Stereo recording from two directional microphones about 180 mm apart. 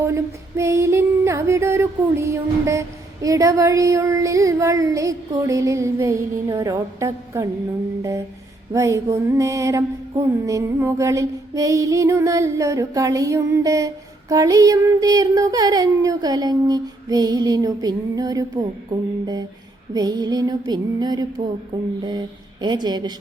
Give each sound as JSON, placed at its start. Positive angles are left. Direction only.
{"t": 0.0, "sound": "female singing", "side_deg": -15}
{"t": 8.7, "sound": "female singing", "side_deg": -15}